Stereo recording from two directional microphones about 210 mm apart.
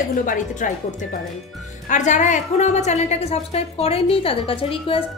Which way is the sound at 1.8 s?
35° left (ahead or behind).